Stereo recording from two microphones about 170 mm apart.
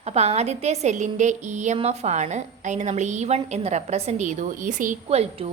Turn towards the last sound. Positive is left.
turn(degrees=-35)  # may be behind; listen again after turning